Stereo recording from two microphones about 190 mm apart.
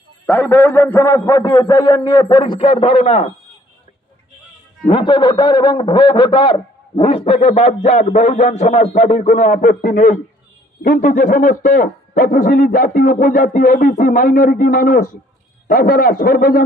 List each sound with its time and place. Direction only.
0.3 s a man's voice: 10° left (ahead or behind); by 3.3 s 30° left (ahead or behind)
4.8 s a man's voice: 25° left (ahead or behind); by 16.6 s 50° left (ahead or behind)